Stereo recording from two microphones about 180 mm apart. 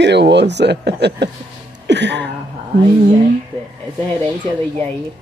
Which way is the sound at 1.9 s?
75° right (ahead or behind).